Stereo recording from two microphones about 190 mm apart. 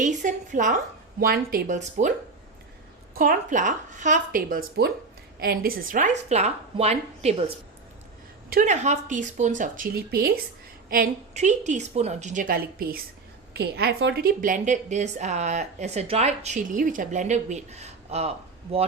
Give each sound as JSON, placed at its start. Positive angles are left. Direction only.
{"t": 0.0, "sound": "a woman's voice", "side_deg": -40}
{"t": 3.2, "sound": "a woman's voice", "side_deg": -45}
{"t": 8.4, "sound": "a woman's voice", "side_deg": -45}